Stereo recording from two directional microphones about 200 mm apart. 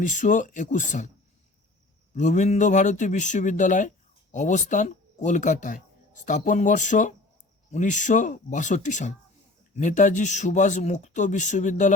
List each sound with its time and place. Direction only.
0.0 s speech: 40° left (ahead or behind)
2.1 s speech: 35° left (ahead or behind)